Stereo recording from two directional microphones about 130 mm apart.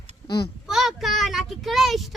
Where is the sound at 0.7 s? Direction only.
Centre (ahead or behind).